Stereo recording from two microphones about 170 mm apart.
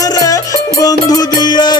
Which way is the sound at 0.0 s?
20° left (ahead or behind).